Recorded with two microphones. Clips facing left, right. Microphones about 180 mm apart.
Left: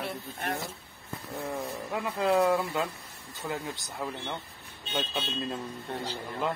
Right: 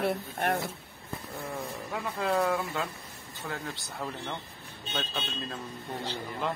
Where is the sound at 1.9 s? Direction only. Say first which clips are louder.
Left 3 dB; 5° left (ahead or behind).